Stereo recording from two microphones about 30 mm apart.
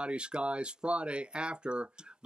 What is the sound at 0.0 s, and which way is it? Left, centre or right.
Speech, right.